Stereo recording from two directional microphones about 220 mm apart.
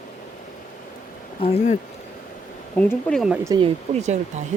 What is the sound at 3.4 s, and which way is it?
Speech, 20° right (ahead or behind).